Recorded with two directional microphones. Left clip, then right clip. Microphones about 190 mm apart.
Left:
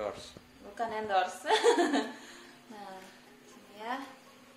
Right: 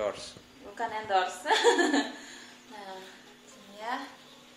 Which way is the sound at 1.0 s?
45° left (ahead or behind).